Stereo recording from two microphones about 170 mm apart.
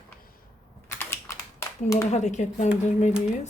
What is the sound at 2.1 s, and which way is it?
Speech, 45° left (ahead or behind).